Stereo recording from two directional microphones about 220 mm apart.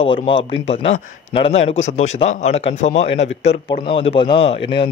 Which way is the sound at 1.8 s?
65° left (ahead or behind).